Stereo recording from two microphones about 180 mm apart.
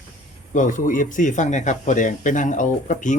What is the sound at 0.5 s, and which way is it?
Speech, 45° left (ahead or behind).